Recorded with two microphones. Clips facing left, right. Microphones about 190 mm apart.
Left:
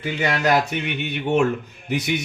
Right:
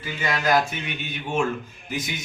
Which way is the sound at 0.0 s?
65° left (ahead or behind).